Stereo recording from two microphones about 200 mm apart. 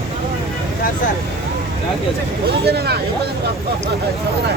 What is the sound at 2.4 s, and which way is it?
Speech, 50° right (ahead or behind).